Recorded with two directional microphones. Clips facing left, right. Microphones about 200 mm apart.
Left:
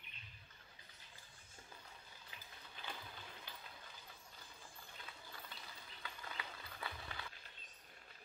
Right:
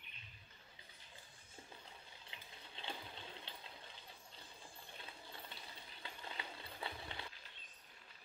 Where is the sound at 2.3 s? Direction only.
25° right (ahead or behind).